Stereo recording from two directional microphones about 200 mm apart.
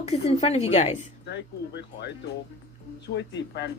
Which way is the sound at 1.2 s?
55° left (ahead or behind).